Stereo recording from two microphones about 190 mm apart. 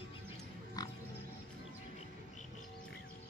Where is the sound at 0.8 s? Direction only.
20° left (ahead or behind).